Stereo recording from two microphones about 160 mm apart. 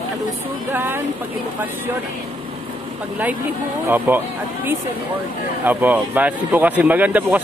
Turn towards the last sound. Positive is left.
turn(degrees=-10)  # may be behind; listen again after turning